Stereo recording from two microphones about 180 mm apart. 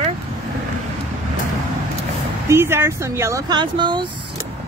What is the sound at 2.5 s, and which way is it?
Speech, 15° right (ahead or behind).